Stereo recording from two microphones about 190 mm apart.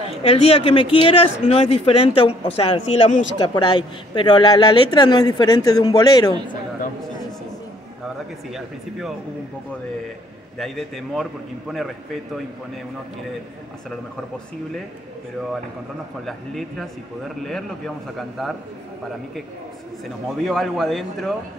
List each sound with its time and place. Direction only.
0.2 s speech: 30° left (ahead or behind)
8.5 s speech: centre (ahead or behind)
10.6 s speech: centre (ahead or behind)
16.3 s speech: centre (ahead or behind)
20.4 s speech: centre (ahead or behind)